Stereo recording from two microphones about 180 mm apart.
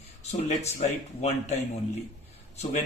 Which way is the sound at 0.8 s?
40° left (ahead or behind).